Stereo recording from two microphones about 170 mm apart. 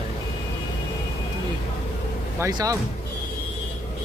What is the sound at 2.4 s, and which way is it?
Speech, 20° right (ahead or behind).